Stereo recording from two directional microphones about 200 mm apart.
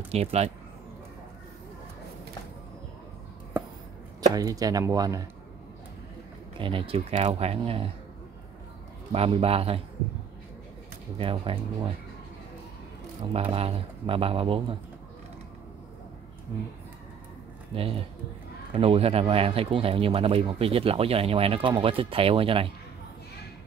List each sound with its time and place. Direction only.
0.1 s speech: 30° right (ahead or behind)
4.4 s speech: 20° right (ahead or behind)
6.6 s speech: 25° right (ahead or behind)
9.1 s speech: 30° right (ahead or behind)
11.1 s speech: 25° right (ahead or behind)
13.3 s speech: 30° right (ahead or behind)
18.7 s speech: 30° right (ahead or behind)